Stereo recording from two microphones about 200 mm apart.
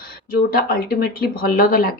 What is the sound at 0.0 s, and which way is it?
Speech, 50° left (ahead or behind).